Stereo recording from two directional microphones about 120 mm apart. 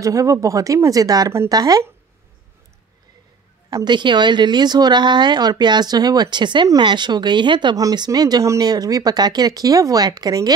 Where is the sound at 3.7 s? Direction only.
40° right (ahead or behind).